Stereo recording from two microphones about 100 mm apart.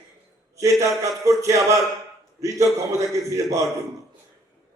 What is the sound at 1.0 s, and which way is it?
Speech, 30° right (ahead or behind).